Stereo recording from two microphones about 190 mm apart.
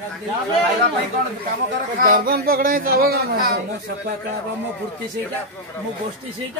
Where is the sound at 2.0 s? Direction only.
50° right (ahead or behind).